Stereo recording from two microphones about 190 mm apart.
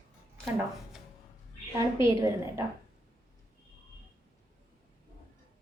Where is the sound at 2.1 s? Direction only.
15° right (ahead or behind).